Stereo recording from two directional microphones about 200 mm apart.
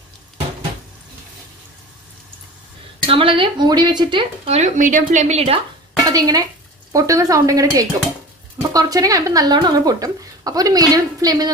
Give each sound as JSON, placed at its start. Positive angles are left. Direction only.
{"t": 3.1, "sound": "speech", "side_deg": -25}
{"t": 6.0, "sound": "a woman's voice", "side_deg": -20}